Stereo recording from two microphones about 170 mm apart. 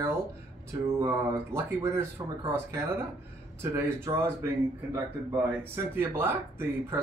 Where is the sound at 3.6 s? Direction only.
15° right (ahead or behind).